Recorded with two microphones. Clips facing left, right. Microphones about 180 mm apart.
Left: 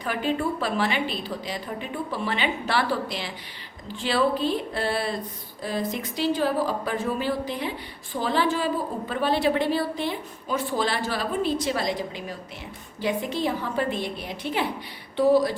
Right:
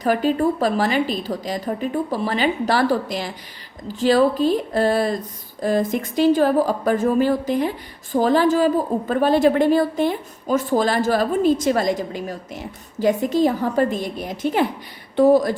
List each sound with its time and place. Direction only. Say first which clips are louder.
0.0 s a woman's voice: right 8 dB; 40° right (ahead or behind)